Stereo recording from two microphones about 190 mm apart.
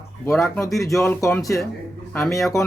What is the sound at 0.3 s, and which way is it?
Speech, centre (ahead or behind).